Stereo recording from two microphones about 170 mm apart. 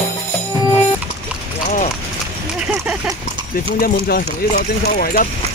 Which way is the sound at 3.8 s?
65° left (ahead or behind).